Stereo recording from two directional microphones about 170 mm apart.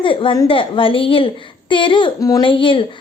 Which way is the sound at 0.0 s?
30° left (ahead or behind).